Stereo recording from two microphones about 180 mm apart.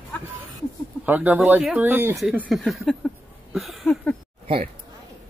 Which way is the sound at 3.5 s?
Centre (ahead or behind).